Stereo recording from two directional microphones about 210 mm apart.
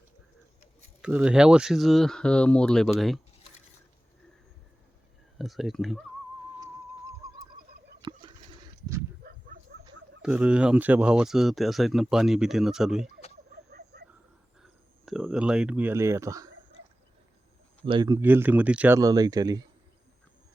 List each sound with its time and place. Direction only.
1.0 s speech: 5° right (ahead or behind)
5.4 s speech: centre (ahead or behind)
8.0 s turkey: 20° right (ahead or behind)
10.2 s speech: 5° right (ahead or behind)
13.7 s vehicle: 50° right (ahead or behind)
14.6 s speech: centre (ahead or behind)
17.8 s speech: 20° right (ahead or behind)